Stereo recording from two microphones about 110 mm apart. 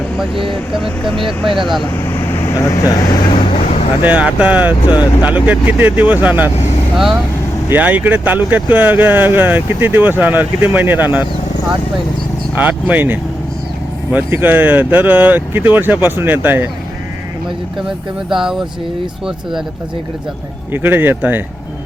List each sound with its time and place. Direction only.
0.8 s speech: centre (ahead or behind)
2.1 s vehicle: 20° left (ahead or behind)
3.0 s speech: 35° left (ahead or behind)
4.0 s speech: 15° right (ahead or behind)
6.9 s speech: centre (ahead or behind)
7.7 s speech: 15° right (ahead or behind)
12.5 s speech: 15° right (ahead or behind)
18.3 s speech: 5° right (ahead or behind)
20.7 s speech: 20° right (ahead or behind)